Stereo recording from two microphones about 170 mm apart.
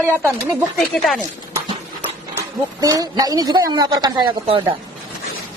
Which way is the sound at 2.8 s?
20° right (ahead or behind).